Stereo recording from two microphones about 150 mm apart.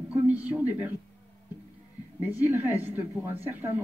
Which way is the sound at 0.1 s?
10° right (ahead or behind).